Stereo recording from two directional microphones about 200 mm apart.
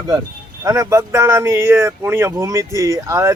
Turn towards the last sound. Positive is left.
turn(degrees=-15)  # may be behind; listen again after turning